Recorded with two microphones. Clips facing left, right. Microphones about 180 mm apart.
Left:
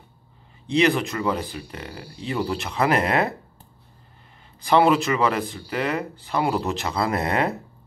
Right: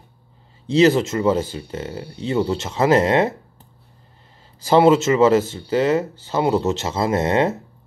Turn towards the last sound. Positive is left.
turn(degrees=-25)  # may be behind; listen again after turning